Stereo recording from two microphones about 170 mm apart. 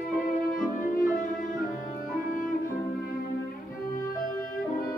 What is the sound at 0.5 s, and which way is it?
Music, 50° left (ahead or behind).